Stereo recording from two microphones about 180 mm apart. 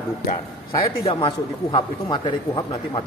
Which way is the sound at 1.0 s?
30° left (ahead or behind).